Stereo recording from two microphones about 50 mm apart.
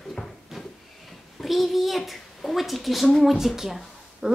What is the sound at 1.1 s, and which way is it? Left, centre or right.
A child's voice, centre.